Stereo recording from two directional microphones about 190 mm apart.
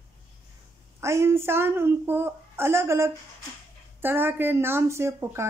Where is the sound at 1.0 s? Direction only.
15° right (ahead or behind).